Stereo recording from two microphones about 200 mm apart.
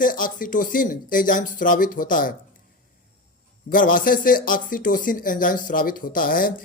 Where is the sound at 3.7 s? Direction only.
45° left (ahead or behind).